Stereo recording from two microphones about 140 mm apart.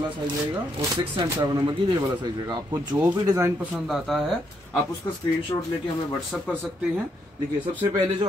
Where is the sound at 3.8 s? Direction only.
Centre (ahead or behind).